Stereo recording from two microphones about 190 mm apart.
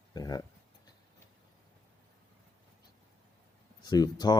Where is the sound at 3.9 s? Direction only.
20° left (ahead or behind).